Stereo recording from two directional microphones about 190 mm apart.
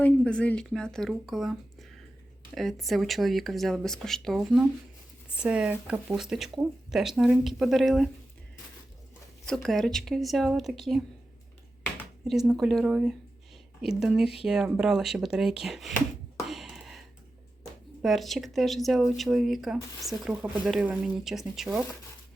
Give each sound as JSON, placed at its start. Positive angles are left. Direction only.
{"t": 0.0, "sound": "speech", "side_deg": 5}
{"t": 2.6, "sound": "speech", "side_deg": 0}
{"t": 9.5, "sound": "speech", "side_deg": 0}
{"t": 12.3, "sound": "speech", "side_deg": 0}
{"t": 16.5, "sound": "a sound", "side_deg": 0}
{"t": 18.0, "sound": "speech", "side_deg": 0}